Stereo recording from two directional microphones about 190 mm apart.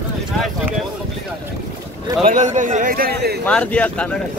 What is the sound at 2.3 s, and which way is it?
A man's voice, 40° right (ahead or behind).